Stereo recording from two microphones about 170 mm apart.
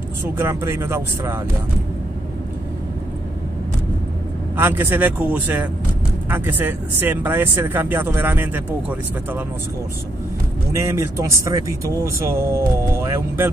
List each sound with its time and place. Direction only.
0.2 s speech: 15° right (ahead or behind)
4.6 s speech: 15° right (ahead or behind)
10.7 s speech: 15° right (ahead or behind)